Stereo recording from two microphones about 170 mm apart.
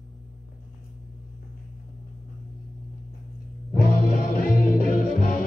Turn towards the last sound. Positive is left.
turn(degrees=50)  # may be behind; listen again after turning